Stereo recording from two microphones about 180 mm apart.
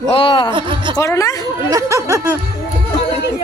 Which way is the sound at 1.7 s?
15° right (ahead or behind).